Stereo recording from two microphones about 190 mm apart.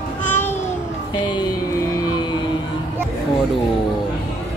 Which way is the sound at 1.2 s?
20° left (ahead or behind).